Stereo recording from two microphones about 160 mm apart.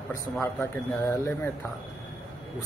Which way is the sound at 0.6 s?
15° left (ahead or behind).